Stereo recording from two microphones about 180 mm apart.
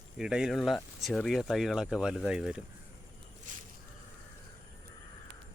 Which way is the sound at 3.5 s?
45° right (ahead or behind).